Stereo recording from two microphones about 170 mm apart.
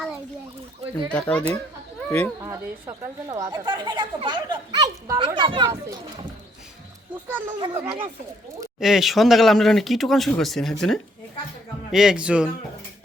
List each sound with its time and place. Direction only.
1.1 s speech: 5° left (ahead or behind)
2.4 s speech: 20° right (ahead or behind)
7.6 s speech: 30° right (ahead or behind)
8.8 s speech: centre (ahead or behind)